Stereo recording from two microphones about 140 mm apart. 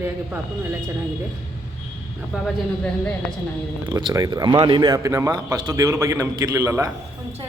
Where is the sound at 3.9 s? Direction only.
30° right (ahead or behind).